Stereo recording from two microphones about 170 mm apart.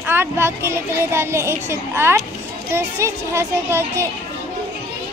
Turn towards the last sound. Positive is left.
turn(degrees=-15)  # may be behind; listen again after turning